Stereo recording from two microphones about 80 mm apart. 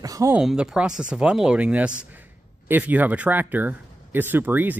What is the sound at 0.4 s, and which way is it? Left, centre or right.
Speech, centre.